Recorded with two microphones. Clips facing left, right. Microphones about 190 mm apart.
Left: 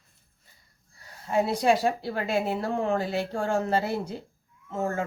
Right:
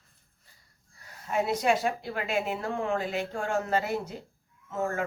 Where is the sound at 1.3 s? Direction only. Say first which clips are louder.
Left 3 dB; 30° left (ahead or behind).